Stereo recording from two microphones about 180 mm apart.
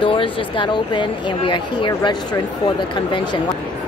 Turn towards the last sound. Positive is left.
turn(degrees=25)  # may be behind; listen again after turning